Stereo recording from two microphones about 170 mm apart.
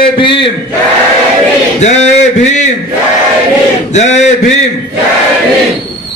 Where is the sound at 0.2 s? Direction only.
30° left (ahead or behind).